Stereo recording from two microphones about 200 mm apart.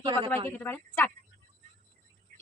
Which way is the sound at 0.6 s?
10° left (ahead or behind).